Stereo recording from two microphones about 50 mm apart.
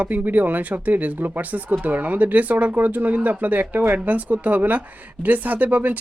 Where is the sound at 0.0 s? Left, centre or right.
Right.